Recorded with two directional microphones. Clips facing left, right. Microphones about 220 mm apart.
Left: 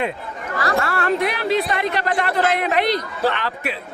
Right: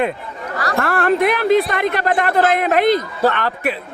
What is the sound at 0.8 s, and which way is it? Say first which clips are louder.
A man's voice: right 6 dB; 50° right (ahead or behind).